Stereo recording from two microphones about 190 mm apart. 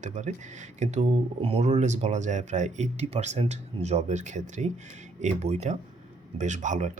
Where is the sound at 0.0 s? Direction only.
40° right (ahead or behind).